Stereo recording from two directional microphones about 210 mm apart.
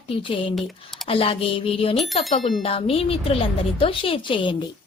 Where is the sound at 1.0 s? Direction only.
25° left (ahead or behind).